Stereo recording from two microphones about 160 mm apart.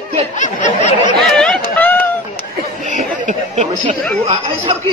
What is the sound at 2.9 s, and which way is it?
Chatter, 50° right (ahead or behind).